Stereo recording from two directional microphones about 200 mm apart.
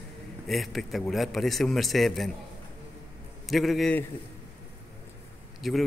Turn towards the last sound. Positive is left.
turn(degrees=0)  # may be behind; listen again after turning